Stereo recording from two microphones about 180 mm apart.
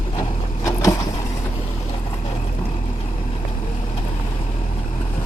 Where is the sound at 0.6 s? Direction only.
15° left (ahead or behind).